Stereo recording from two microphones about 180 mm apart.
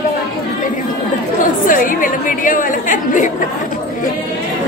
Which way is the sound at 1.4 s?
50° left (ahead or behind).